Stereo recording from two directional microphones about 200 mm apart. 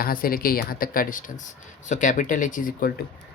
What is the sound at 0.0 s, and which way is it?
Speech, 45° left (ahead or behind).